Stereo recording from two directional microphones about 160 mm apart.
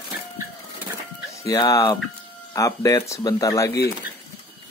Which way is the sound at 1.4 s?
20° left (ahead or behind).